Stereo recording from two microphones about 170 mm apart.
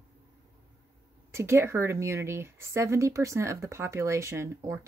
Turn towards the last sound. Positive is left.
turn(degrees=-15)  # may be behind; listen again after turning